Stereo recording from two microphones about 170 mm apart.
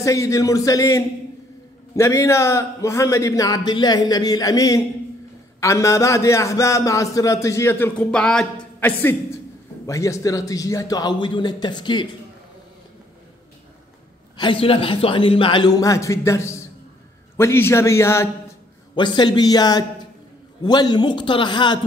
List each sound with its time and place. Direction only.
0.0 s a man's voice: 20° left (ahead or behind)
14.3 s a man's voice: 30° left (ahead or behind)
18.9 s a man's voice: 25° left (ahead or behind)